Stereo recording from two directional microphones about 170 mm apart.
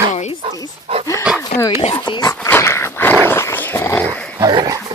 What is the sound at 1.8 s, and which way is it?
Speech, 30° left (ahead or behind).